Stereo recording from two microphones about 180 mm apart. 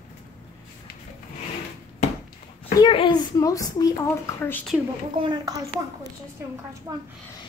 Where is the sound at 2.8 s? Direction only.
25° left (ahead or behind).